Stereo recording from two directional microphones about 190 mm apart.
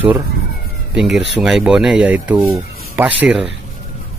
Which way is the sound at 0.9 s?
5° right (ahead or behind).